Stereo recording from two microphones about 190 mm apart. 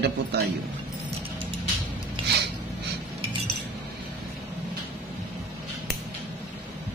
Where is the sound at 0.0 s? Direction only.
60° right (ahead or behind).